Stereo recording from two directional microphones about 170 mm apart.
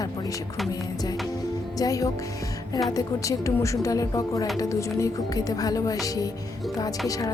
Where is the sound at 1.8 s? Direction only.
20° left (ahead or behind).